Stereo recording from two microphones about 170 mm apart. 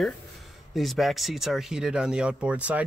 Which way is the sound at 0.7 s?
Centre (ahead or behind).